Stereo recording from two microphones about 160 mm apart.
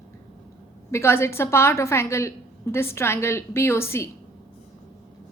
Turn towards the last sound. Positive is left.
turn(degrees=15)  # may be behind; listen again after turning